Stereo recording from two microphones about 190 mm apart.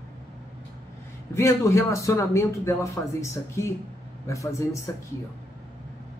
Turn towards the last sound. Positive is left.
turn(degrees=15)  # may be behind; listen again after turning